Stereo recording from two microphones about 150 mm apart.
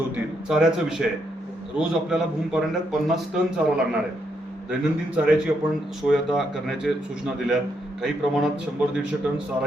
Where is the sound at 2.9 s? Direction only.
5° right (ahead or behind).